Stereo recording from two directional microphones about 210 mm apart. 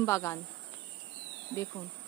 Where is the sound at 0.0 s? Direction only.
15° left (ahead or behind).